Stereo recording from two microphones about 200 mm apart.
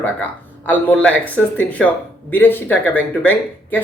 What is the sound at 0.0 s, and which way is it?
Speech, 10° left (ahead or behind).